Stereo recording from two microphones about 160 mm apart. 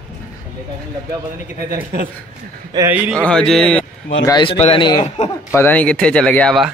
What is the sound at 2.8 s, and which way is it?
Speech, 10° right (ahead or behind).